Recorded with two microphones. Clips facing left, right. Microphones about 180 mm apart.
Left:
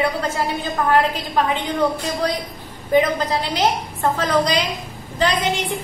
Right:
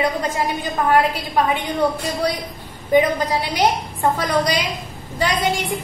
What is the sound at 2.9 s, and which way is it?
A woman's voice, 10° right (ahead or behind).